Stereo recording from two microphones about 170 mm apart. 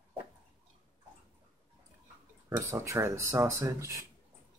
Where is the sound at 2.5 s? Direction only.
15° right (ahead or behind).